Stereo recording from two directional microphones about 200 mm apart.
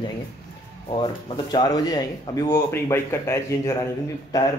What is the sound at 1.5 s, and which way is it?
Speech, 20° left (ahead or behind).